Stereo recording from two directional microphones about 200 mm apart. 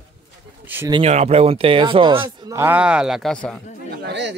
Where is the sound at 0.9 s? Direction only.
30° right (ahead or behind); by 3.6 s 5° left (ahead or behind).